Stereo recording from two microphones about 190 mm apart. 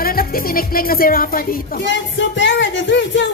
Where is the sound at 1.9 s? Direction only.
75° left (ahead or behind).